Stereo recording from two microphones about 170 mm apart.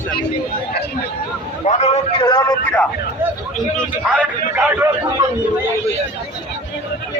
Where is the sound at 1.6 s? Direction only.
45° left (ahead or behind).